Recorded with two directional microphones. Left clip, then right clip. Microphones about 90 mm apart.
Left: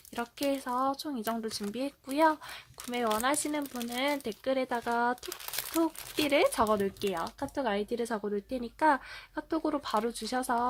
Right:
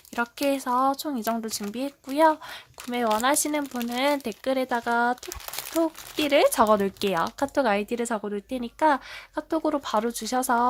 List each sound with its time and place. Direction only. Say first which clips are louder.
0.2 s speech: right 7 dB; 35° right (ahead or behind)
2.1 s a woman's voice: right 6 dB; 20° right (ahead or behind); by 4.3 s 40° right (ahead or behind)
4.4 s a woman's voice: right 5 dB; 25° right (ahead or behind)
6.7 s speech: right 7 dB; 55° right (ahead or behind)
7.0 s speech: right 8 dB; 90° right; by 7.8 s 70° right (ahead or behind)
7.8 s a woman's voice: right 5 dB; 45° right (ahead or behind)